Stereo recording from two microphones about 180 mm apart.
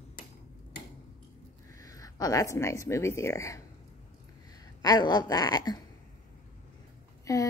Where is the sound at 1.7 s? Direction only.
20° left (ahead or behind).